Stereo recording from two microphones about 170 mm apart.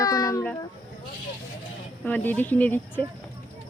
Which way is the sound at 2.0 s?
10° left (ahead or behind).